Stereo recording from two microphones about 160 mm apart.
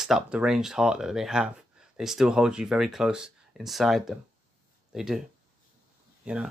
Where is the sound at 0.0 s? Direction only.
5° right (ahead or behind).